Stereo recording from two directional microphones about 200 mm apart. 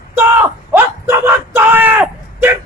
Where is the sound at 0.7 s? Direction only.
10° right (ahead or behind).